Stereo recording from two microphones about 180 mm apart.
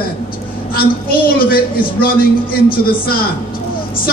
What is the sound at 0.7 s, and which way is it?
A woman's voice, 55° left (ahead or behind).